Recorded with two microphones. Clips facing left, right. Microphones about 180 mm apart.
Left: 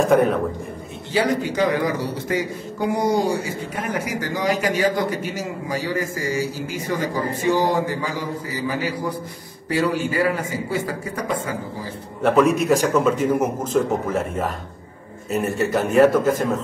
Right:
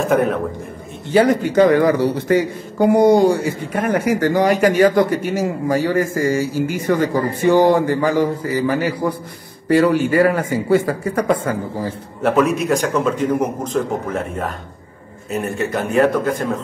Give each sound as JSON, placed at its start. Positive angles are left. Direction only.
{"t": 0.0, "sound": "a man's voice", "side_deg": 0}
{"t": 1.1, "sound": "a man's voice", "side_deg": -55}
{"t": 12.2, "sound": "a man's voice", "side_deg": 0}